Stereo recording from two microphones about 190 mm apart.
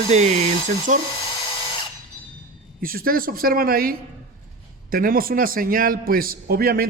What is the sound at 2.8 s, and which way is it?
Speech, 50° right (ahead or behind).